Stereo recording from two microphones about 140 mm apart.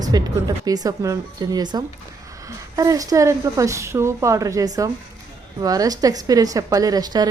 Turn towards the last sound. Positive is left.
turn(degrees=-30)  # may be behind; listen again after turning